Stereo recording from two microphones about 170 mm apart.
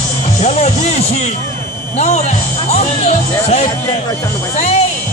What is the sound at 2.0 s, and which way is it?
Speech, 40° left (ahead or behind).